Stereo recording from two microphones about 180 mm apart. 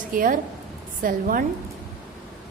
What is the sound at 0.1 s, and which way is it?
A woman's voice, 50° right (ahead or behind).